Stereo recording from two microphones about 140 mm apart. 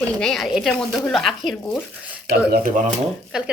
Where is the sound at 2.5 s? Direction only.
80° right.